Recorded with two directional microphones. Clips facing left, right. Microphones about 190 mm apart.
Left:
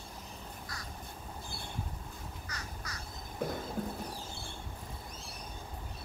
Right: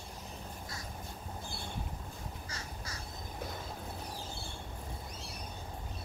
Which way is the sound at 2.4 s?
25° right (ahead or behind).